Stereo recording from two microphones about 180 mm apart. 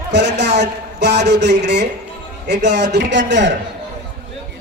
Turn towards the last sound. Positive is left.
turn(degrees=-80)